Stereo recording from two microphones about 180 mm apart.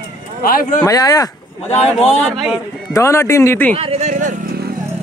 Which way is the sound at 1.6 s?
40° left (ahead or behind).